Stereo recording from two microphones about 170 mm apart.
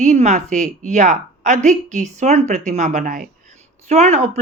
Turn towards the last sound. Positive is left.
turn(degrees=-40)  # may be behind; listen again after turning